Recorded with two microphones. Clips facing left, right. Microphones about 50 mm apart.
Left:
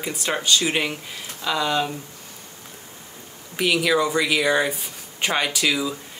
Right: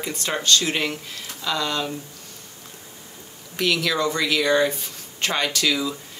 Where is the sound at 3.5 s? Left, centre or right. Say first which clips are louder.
Left 3 dB; centre.